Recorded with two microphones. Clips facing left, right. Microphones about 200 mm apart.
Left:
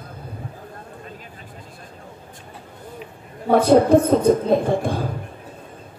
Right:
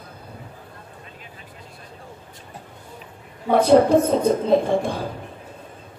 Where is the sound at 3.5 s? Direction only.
55° left (ahead or behind).